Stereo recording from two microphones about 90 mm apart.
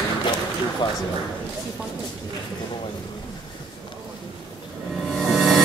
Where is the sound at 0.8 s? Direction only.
60° left (ahead or behind).